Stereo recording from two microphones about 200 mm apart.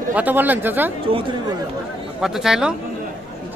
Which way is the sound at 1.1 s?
25° right (ahead or behind).